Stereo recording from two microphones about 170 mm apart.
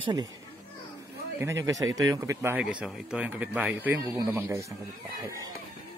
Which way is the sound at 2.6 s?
5° right (ahead or behind).